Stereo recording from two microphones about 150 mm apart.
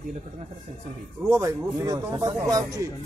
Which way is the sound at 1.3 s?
20° right (ahead or behind).